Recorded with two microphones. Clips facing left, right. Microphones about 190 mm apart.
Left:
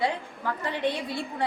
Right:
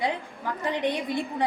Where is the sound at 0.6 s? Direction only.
15° right (ahead or behind).